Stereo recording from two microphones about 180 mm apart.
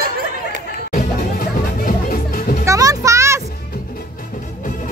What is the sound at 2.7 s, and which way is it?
Music, 20° right (ahead or behind).